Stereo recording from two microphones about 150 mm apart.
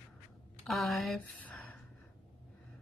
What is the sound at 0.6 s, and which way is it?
Speech, centre (ahead or behind).